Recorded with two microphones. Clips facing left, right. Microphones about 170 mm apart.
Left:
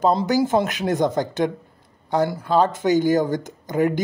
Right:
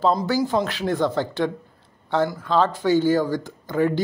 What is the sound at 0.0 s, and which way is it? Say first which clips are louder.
Speech: left 2 dB; 25° left (ahead or behind).